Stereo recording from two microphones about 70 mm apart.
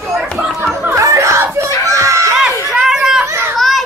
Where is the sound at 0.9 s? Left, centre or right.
Right.